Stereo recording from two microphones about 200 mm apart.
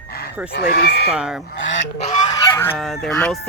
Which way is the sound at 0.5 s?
50° left (ahead or behind).